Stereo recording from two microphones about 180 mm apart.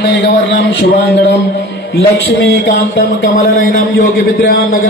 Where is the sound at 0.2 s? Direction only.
75° left (ahead or behind).